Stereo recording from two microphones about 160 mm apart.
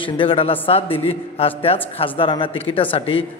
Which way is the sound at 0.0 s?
35° left (ahead or behind).